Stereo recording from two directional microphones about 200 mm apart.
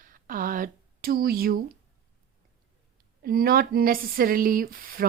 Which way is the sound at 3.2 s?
45° right (ahead or behind).